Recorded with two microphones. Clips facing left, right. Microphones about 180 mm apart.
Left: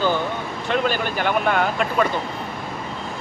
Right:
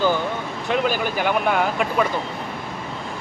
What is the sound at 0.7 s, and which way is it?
Speech, 10° right (ahead or behind).